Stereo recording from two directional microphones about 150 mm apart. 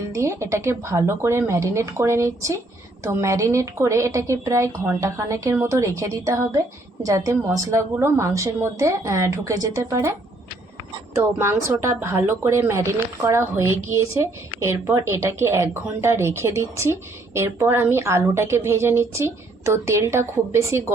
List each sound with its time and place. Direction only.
0.1 s a woman's voice: 20° right (ahead or behind)
11.1 s a woman's voice: 20° right (ahead or behind)